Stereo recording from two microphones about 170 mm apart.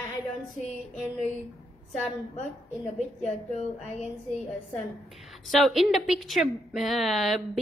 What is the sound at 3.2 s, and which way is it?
A woman's voice, 40° left (ahead or behind).